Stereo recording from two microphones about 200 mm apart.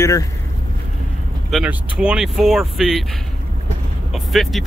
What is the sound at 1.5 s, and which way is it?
Speech, 5° right (ahead or behind).